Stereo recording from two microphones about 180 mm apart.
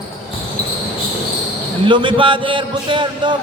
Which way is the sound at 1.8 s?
25° right (ahead or behind).